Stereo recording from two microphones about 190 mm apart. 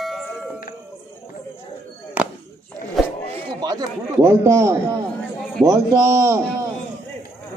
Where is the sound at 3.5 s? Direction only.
20° right (ahead or behind).